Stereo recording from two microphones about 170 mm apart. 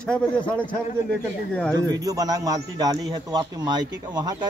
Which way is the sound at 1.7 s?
20° right (ahead or behind).